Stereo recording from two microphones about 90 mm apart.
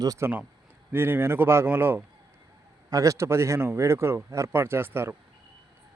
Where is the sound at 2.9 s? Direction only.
40° right (ahead or behind).